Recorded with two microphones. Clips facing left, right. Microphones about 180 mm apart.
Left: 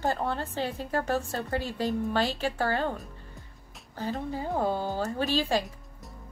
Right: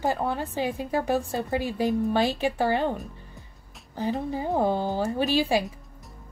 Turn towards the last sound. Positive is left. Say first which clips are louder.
# right 4 dB
turn(degrees=-15)  # may be behind; listen again after turning